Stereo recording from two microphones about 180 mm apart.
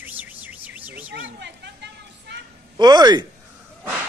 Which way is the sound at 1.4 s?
70° right (ahead or behind).